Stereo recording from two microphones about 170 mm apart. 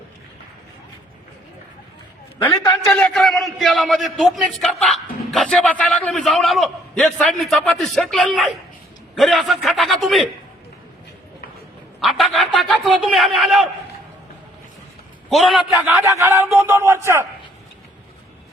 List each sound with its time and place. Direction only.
2.6 s a man's voice: 5° left (ahead or behind)
11.9 s a man's voice: centre (ahead or behind)
15.3 s a man's voice: centre (ahead or behind)
15.7 s a sound: 10° right (ahead or behind)